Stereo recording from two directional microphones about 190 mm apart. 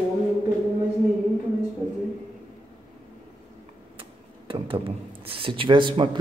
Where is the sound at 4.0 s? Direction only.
30° right (ahead or behind).